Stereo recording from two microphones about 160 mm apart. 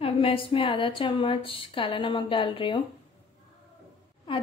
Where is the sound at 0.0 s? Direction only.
35° left (ahead or behind).